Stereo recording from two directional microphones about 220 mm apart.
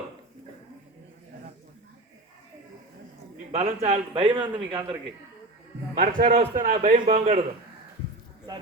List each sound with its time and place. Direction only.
3.8 s a man's voice: 30° right (ahead or behind)
5.9 s a man's voice: 40° right (ahead or behind)